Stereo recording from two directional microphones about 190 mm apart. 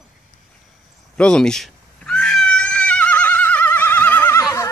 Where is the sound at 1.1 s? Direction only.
5° left (ahead or behind).